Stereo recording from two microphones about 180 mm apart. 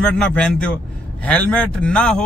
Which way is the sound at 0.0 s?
5° left (ahead or behind).